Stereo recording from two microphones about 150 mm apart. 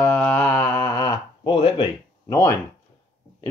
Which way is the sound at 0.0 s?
15° left (ahead or behind).